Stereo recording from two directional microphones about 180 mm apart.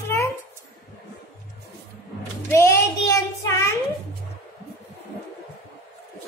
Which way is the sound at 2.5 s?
15° left (ahead or behind).